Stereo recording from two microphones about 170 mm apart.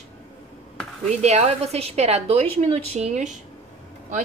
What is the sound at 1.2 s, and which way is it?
A woman's voice, 40° right (ahead or behind).